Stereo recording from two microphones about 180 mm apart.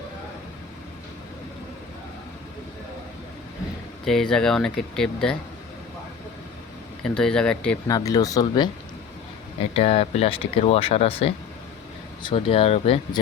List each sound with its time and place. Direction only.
4.0 s speech: 5° left (ahead or behind)
7.0 s speech: 5° left (ahead or behind)
7.9 s speech: 20° left (ahead or behind)
9.7 s speech: 35° left (ahead or behind)